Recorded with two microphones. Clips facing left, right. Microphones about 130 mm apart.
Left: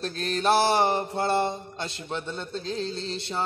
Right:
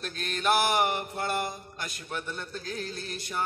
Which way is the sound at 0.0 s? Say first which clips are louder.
Left 4 dB; 30° left (ahead or behind).